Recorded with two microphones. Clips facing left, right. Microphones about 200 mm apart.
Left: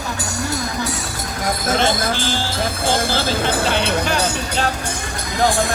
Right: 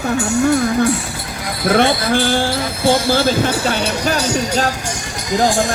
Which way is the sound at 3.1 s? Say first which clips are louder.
Right 6 dB; 55° right (ahead or behind).